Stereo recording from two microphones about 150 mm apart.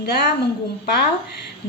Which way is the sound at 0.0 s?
90° left.